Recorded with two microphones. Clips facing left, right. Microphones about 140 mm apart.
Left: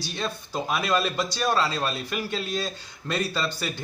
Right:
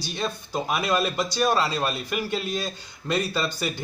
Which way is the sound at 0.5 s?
5° right (ahead or behind).